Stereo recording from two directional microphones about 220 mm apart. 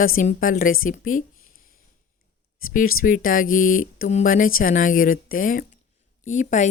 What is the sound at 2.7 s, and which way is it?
Speech, 40° left (ahead or behind).